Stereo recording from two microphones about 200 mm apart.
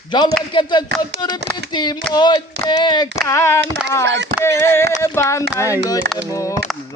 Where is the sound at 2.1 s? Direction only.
20° left (ahead or behind).